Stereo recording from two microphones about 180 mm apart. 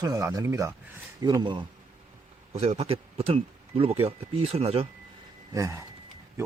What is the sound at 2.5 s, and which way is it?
Speech, 35° right (ahead or behind).